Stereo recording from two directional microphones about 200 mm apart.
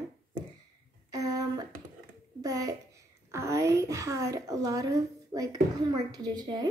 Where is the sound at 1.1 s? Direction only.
20° right (ahead or behind).